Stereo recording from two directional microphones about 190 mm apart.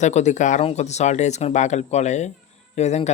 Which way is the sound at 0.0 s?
35° left (ahead or behind).